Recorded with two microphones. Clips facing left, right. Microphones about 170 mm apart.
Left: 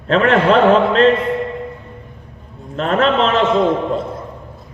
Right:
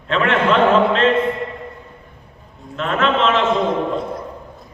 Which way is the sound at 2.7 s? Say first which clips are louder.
Left 3 dB; 40° left (ahead or behind).